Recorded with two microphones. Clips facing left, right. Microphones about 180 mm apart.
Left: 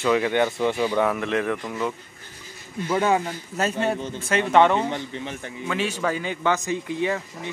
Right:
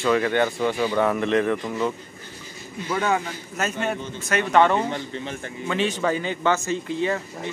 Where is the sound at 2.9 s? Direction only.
20° left (ahead or behind).